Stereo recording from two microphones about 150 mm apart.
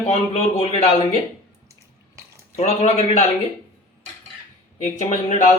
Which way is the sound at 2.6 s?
50° left (ahead or behind).